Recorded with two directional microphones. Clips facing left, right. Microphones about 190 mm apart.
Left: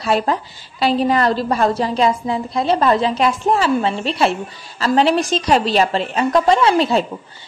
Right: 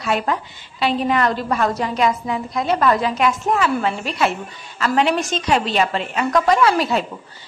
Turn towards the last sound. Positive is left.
turn(degrees=25)  # may be behind; listen again after turning